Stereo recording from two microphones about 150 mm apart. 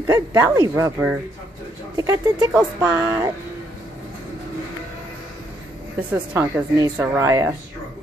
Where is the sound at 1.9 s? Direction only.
25° right (ahead or behind).